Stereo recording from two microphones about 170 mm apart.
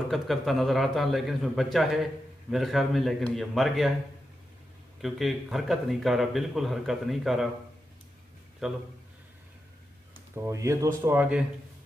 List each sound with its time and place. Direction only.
0.1 s speech: centre (ahead or behind)
5.0 s speech: centre (ahead or behind)
8.6 s speech: centre (ahead or behind)
10.3 s speech: 15° right (ahead or behind)